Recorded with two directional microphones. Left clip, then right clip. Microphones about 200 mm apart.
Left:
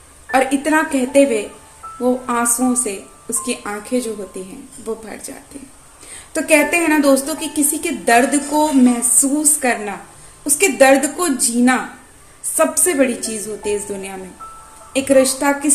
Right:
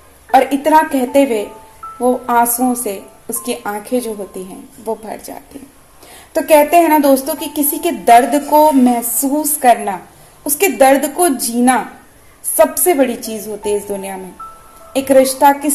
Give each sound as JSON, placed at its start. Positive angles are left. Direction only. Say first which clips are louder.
{"t": 0.3, "sound": "a woman's voice", "louder": "right 5 dB", "side_deg": -10}
{"t": 6.3, "sound": "a woman's voice", "louder": "right 5 dB", "side_deg": -10}
{"t": 14.9, "sound": "a woman's voice", "louder": "right 3 dB", "side_deg": -10}